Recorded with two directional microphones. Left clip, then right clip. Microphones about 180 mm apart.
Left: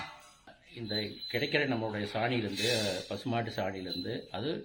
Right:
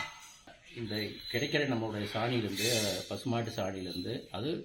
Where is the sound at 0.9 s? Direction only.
30° left (ahead or behind).